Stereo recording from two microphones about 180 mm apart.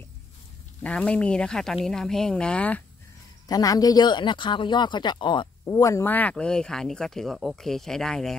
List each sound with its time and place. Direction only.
0.8 s speech: 5° left (ahead or behind)
3.4 s speech: 20° left (ahead or behind); by 8.4 s centre (ahead or behind)